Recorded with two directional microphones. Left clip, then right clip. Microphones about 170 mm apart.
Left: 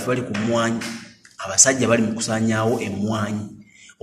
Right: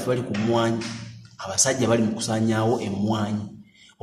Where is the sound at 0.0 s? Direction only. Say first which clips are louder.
Left 2 dB; 15° right (ahead or behind).